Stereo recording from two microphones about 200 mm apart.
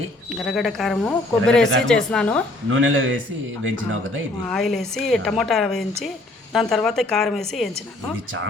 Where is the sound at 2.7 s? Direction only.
70° right (ahead or behind).